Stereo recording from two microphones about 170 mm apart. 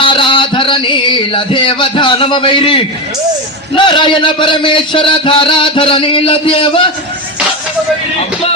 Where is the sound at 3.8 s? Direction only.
30° left (ahead or behind).